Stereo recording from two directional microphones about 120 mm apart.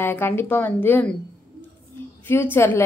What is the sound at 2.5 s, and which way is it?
Speech, 20° left (ahead or behind).